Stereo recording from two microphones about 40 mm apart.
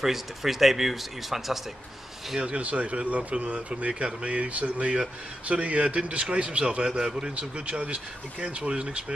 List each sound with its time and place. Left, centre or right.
0.0 s speech: centre
2.5 s speech: right
6.9 s speech: centre
7.3 s speech: right